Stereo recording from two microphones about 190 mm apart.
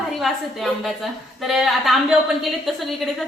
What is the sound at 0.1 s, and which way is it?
A woman's voice, centre (ahead or behind).